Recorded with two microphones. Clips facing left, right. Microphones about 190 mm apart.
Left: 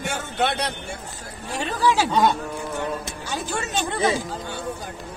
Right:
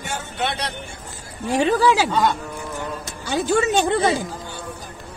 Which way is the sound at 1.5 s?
80° right.